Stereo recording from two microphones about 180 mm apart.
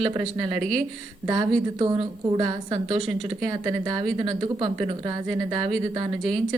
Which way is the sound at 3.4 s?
20° right (ahead or behind).